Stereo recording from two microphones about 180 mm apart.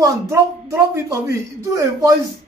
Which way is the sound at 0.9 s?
15° right (ahead or behind).